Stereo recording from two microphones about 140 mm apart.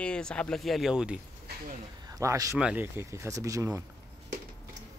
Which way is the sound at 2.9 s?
20° right (ahead or behind).